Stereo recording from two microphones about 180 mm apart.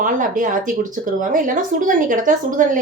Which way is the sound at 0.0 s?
45° right (ahead or behind).